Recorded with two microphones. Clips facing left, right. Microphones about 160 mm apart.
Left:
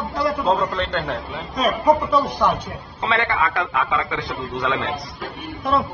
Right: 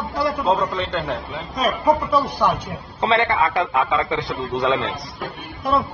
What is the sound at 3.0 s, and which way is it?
A man's voice, 30° right (ahead or behind).